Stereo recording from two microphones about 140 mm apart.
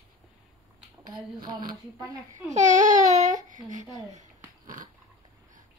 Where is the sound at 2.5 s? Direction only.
60° right (ahead or behind).